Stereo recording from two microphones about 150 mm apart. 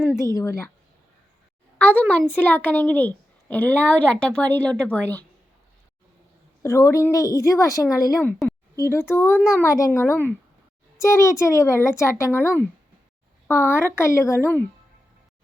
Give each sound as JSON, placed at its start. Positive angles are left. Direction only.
{"t": 0.0, "sound": "a woman's voice", "side_deg": 15}
{"t": 1.8, "sound": "a woman's voice", "side_deg": 10}
{"t": 6.6, "sound": "a woman's voice", "side_deg": 20}